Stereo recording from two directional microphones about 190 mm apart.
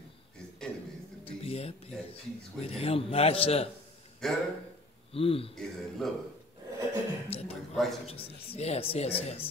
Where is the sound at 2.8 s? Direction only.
30° left (ahead or behind).